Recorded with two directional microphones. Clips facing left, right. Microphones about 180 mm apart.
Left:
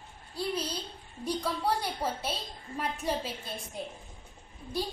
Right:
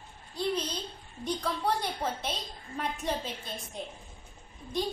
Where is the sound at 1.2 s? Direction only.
5° left (ahead or behind).